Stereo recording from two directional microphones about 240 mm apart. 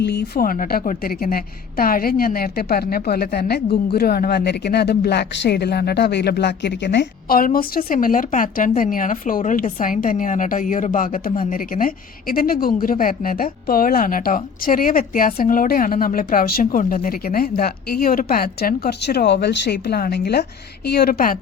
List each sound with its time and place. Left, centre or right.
0.0 s a woman's voice: left